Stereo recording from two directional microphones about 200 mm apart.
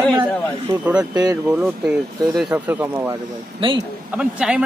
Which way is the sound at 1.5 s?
5° right (ahead or behind).